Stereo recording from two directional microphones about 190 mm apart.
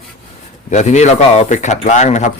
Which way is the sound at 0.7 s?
40° left (ahead or behind).